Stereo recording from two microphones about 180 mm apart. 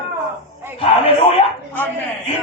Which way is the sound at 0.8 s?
30° left (ahead or behind).